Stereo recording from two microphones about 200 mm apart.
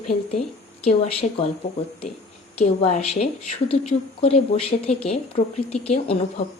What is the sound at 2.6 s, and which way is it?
A woman's voice, 35° left (ahead or behind).